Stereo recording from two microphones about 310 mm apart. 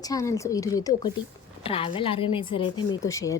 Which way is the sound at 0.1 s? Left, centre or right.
Centre.